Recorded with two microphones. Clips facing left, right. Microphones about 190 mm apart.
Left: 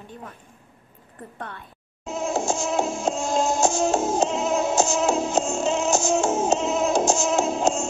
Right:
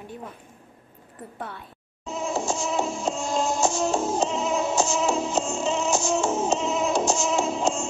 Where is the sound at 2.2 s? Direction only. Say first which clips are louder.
Left 2 dB; 45° left (ahead or behind).